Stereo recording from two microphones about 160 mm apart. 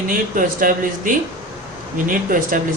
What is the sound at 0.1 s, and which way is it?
Speech, 55° right (ahead or behind).